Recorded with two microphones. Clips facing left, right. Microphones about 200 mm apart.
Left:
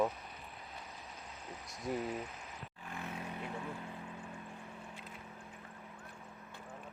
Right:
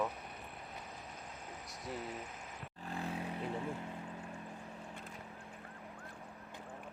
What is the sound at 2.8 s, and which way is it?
Vehicle, 35° right (ahead or behind).